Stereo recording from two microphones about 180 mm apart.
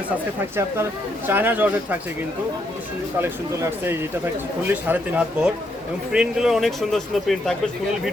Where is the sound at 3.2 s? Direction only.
10° right (ahead or behind).